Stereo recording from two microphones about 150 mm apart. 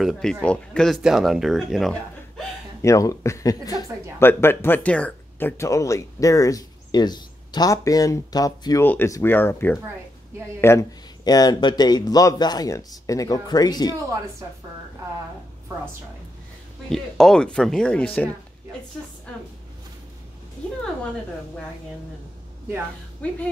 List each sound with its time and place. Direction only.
0.0 s speech: centre (ahead or behind)
2.8 s speech: 20° left (ahead or behind)
14.4 s a woman's voice: 25° right (ahead or behind)
16.9 s speech: 5° left (ahead or behind)
23.2 s speech: 10° left (ahead or behind)